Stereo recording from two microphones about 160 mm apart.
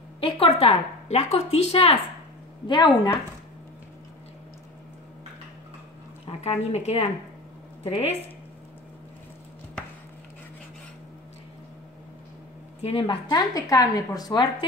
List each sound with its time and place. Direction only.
0.2 s a woman's voice: 35° left (ahead or behind)
6.2 s a woman's voice: 40° left (ahead or behind)
12.8 s a woman's voice: 35° left (ahead or behind)